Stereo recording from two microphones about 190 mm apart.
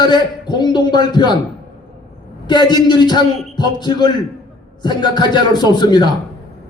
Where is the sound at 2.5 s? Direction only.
25° left (ahead or behind).